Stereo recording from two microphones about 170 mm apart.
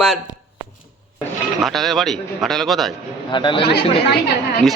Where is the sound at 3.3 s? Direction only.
30° left (ahead or behind).